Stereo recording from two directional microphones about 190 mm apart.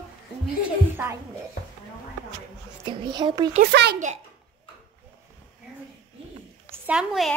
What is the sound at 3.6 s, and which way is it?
Speech, 60° right (ahead or behind).